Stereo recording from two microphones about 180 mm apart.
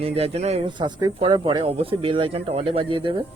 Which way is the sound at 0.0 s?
35° right (ahead or behind).